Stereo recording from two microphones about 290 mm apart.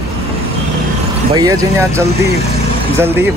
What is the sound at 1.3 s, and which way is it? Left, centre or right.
Speech, centre.